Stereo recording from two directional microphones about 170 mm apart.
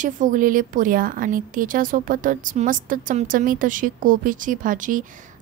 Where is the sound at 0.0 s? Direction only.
50° right (ahead or behind).